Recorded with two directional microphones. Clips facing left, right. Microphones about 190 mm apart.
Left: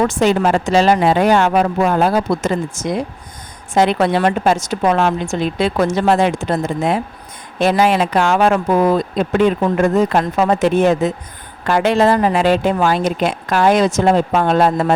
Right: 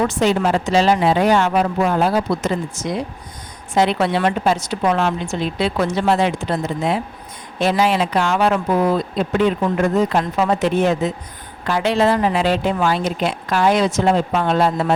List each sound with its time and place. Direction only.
0.1 s speech: 50° left (ahead or behind)